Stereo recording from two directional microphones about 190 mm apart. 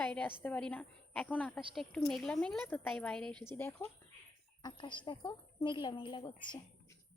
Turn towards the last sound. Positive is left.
turn(degrees=25)  # may be behind; listen again after turning